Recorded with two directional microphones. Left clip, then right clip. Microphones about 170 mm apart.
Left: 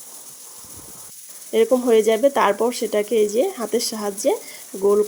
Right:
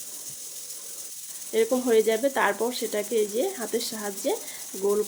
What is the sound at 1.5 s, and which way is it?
Speech, 35° left (ahead or behind).